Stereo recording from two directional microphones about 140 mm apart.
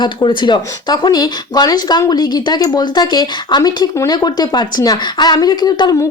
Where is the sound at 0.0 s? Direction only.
35° left (ahead or behind).